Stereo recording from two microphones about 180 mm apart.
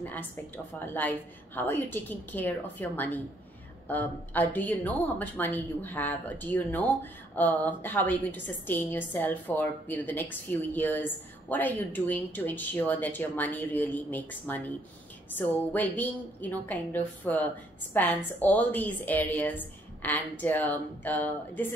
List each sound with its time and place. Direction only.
0.0 s speech: 10° left (ahead or behind)
15.7 s speech: 10° left (ahead or behind)